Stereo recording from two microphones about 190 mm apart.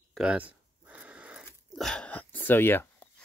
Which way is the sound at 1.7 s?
5° left (ahead or behind).